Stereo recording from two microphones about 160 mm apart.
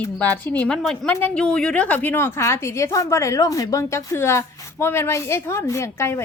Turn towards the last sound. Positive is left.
turn(degrees=15)  # may be behind; listen again after turning